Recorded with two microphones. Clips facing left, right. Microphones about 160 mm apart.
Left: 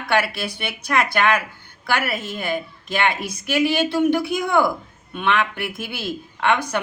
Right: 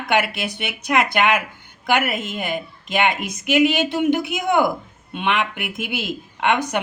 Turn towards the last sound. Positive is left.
turn(degrees=-20)  # may be behind; listen again after turning